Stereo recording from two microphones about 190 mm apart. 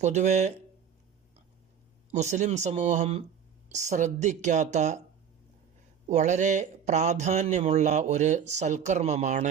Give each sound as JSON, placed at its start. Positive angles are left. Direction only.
{"t": 0.0, "sound": "speech", "side_deg": -40}
{"t": 2.1, "sound": "speech", "side_deg": -40}
{"t": 6.1, "sound": "speech", "side_deg": -40}